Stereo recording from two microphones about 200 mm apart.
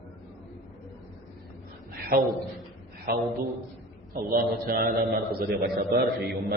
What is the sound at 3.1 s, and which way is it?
A man's voice, 50° right (ahead or behind).